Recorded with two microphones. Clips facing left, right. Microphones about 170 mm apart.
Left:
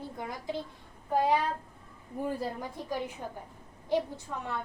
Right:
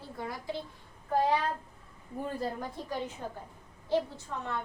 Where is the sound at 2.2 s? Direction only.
10° left (ahead or behind).